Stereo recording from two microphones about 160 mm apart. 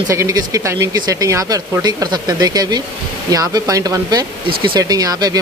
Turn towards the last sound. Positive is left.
turn(degrees=-20)  # may be behind; listen again after turning